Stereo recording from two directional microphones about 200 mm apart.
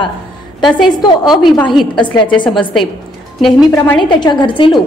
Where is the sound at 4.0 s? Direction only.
20° left (ahead or behind).